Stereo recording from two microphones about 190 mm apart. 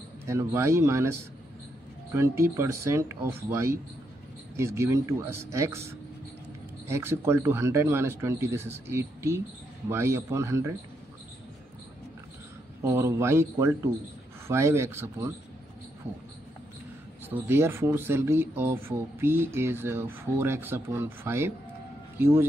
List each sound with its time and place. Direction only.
0.3 s speech: 15° right (ahead or behind)
2.1 s speech: 15° right (ahead or behind)
12.8 s speech: 15° right (ahead or behind)
17.3 s speech: 10° right (ahead or behind)